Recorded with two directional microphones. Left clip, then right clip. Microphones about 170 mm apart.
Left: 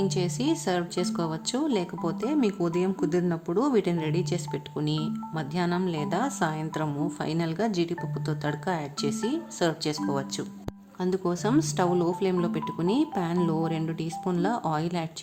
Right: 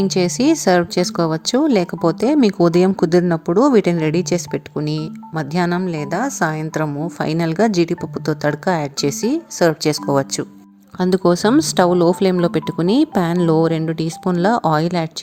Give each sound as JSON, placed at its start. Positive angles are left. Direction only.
{"t": 0.1, "sound": "a woman's voice", "side_deg": -40}
{"t": 5.8, "sound": "a woman's voice", "side_deg": -30}